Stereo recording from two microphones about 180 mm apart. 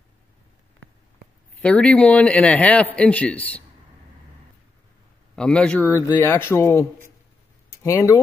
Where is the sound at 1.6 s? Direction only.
5° left (ahead or behind).